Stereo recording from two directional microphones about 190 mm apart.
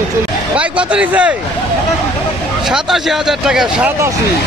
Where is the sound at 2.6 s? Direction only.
Centre (ahead or behind).